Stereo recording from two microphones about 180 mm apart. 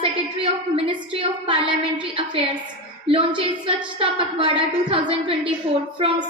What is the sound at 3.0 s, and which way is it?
A woman's voice, 30° right (ahead or behind).